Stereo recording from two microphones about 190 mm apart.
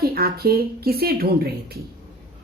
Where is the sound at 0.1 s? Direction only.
55° right (ahead or behind).